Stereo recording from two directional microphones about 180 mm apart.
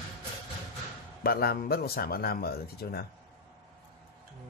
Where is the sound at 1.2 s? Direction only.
60° left (ahead or behind).